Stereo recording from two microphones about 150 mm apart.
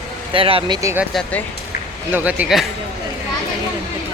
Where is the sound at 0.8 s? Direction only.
20° right (ahead or behind).